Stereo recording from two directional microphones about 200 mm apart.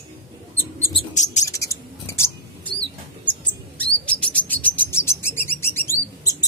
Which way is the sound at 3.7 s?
5° left (ahead or behind).